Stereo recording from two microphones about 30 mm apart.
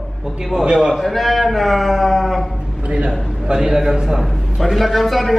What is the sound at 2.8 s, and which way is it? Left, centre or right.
Speech, right.